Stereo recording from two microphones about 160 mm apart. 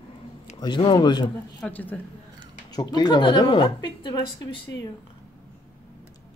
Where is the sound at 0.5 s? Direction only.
30° left (ahead or behind).